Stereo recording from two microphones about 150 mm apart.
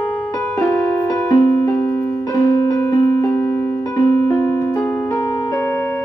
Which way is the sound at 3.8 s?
20° left (ahead or behind).